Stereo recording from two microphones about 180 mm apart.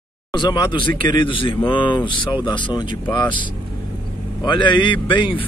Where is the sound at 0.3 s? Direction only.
25° left (ahead or behind).